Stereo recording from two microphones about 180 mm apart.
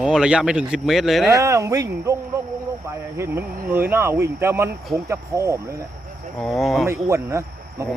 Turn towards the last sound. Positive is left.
turn(degrees=-15)  # may be behind; listen again after turning